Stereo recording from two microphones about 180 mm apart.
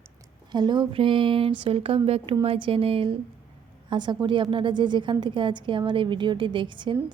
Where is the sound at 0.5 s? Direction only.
25° right (ahead or behind).